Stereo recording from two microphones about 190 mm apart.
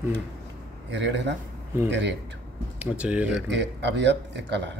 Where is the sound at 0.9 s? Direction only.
70° right (ahead or behind).